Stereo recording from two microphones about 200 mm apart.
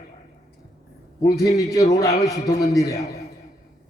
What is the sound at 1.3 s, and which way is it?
Speech, 15° left (ahead or behind).